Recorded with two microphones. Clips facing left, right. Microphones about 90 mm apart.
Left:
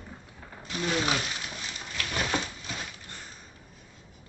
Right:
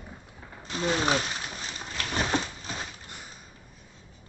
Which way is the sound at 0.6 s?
35° right (ahead or behind).